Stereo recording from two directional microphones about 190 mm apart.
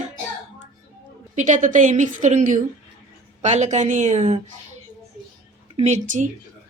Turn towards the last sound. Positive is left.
turn(degrees=-40)  # may be behind; listen again after turning